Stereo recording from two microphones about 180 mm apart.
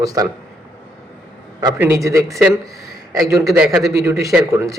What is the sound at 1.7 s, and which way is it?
Speech, 10° right (ahead or behind).